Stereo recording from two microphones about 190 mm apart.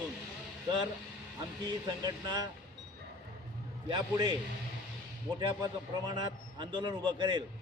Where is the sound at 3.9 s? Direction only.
25° right (ahead or behind).